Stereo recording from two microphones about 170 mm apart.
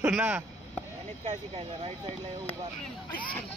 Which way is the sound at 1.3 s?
35° right (ahead or behind).